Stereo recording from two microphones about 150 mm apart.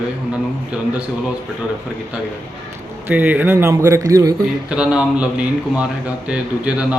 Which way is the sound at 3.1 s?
10° right (ahead or behind).